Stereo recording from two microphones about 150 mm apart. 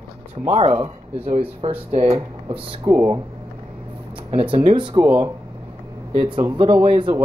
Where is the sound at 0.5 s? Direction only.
40° right (ahead or behind).